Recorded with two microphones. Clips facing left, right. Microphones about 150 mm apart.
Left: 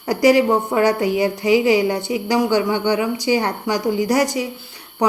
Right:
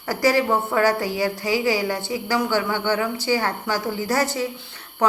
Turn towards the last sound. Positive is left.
turn(degrees=15)  # may be behind; listen again after turning